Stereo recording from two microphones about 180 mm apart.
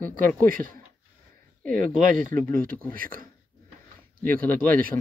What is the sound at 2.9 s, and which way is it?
Speech, 50° right (ahead or behind).